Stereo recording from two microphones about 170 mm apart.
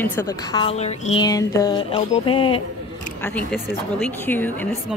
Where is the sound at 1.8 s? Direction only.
30° left (ahead or behind).